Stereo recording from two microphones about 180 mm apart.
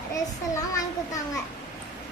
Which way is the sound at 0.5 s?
20° left (ahead or behind).